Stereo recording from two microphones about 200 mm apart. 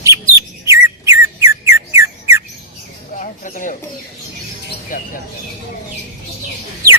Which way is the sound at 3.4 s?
40° left (ahead or behind).